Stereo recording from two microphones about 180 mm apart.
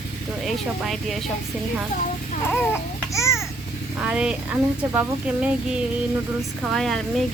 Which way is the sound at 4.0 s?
5° right (ahead or behind).